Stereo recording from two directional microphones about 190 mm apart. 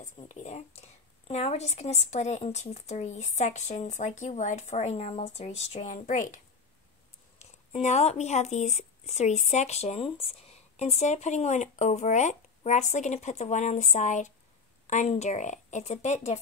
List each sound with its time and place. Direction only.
0.3 s speech: 35° left (ahead or behind)